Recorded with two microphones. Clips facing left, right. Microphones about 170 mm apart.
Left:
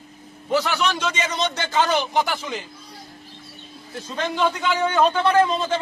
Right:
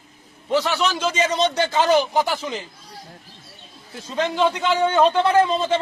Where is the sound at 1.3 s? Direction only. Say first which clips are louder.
Right 5 dB; 30° right (ahead or behind).